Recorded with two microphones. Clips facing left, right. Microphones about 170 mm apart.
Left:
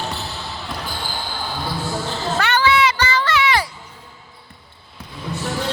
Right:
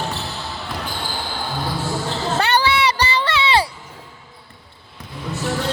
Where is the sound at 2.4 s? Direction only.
30° right (ahead or behind).